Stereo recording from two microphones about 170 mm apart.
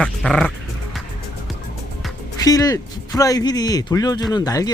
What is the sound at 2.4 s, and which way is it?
A man's voice, 20° left (ahead or behind).